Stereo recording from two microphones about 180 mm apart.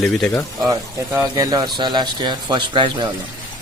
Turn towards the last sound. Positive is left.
turn(degrees=-25)  # may be behind; listen again after turning